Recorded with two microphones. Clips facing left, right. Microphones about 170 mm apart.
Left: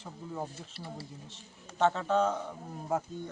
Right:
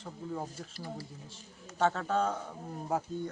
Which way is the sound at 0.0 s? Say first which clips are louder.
Right 1 dB; 5° left (ahead or behind).